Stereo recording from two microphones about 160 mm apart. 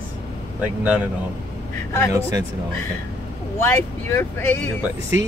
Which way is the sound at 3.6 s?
20° left (ahead or behind).